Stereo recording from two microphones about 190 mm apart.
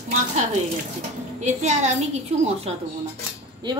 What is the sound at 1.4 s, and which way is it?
Speech, 35° right (ahead or behind).